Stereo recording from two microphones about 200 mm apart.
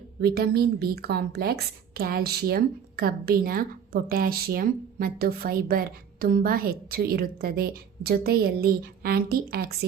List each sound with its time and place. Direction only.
0.2 s speech: 50° right (ahead or behind)